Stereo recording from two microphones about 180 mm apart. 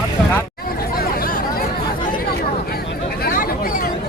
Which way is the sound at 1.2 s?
55° left (ahead or behind).